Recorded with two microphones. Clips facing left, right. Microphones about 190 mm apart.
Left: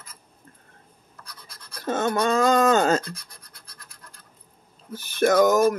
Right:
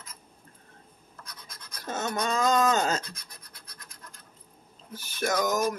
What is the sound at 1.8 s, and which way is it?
Speech, 55° left (ahead or behind).